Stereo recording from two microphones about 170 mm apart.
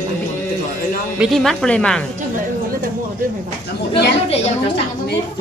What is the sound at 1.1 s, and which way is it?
Speech, centre (ahead or behind).